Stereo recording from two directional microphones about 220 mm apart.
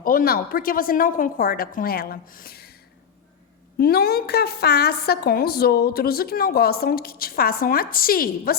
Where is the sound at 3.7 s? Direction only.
45° left (ahead or behind).